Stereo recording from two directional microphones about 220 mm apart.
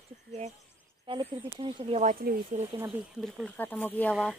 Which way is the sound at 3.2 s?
Centre (ahead or behind).